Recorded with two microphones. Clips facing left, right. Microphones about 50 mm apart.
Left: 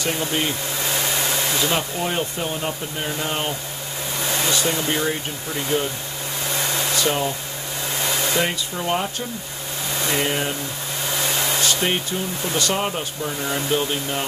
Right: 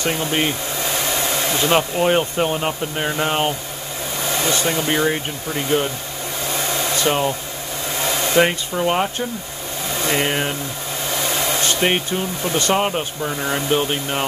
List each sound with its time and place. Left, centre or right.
0.0 s speech: right
1.6 s speech: right
4.6 s speech: right
7.0 s speech: right
8.4 s speech: right
11.6 s a sound: right
12.5 s speech: right